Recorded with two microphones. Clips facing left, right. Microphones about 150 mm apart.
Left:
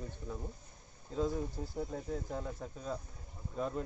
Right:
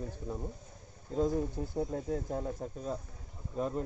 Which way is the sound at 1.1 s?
45° right (ahead or behind).